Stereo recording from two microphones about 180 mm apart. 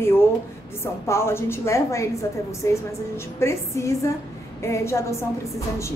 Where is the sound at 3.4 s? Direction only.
15° left (ahead or behind).